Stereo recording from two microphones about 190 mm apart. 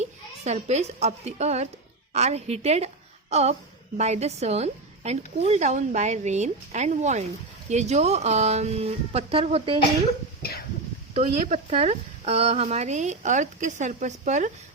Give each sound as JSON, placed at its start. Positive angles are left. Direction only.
{"t": 0.0, "sound": "a child's voice", "side_deg": -35}
{"t": 11.1, "sound": "speech", "side_deg": -35}